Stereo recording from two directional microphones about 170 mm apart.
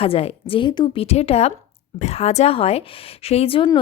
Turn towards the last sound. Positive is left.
turn(degrees=30)  # may be behind; listen again after turning